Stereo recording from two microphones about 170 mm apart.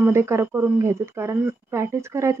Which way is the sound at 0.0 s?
15° right (ahead or behind).